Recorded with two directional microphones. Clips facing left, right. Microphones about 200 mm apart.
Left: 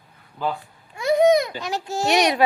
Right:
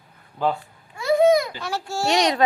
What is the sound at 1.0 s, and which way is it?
A child's voice, 20° left (ahead or behind).